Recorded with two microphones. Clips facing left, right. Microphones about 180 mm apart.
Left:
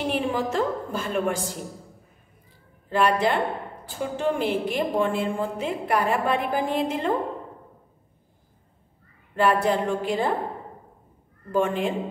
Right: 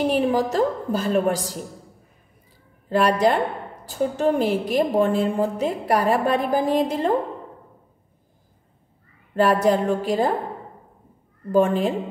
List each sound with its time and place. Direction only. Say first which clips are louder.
0.0 s a woman's voice: right 5 dB; 35° right (ahead or behind)
2.9 s a woman's voice: right 3 dB; 40° right (ahead or behind)
9.3 s a woman's voice: right 3 dB; 40° right (ahead or behind)
11.5 s a woman's voice: right 5 dB; 40° right (ahead or behind)